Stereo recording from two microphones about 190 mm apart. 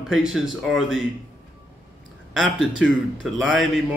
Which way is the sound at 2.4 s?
Centre (ahead or behind).